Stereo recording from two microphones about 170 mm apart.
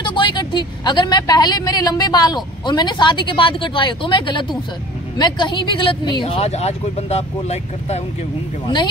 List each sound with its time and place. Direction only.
0.0 s a woman's voice: 25° left (ahead or behind)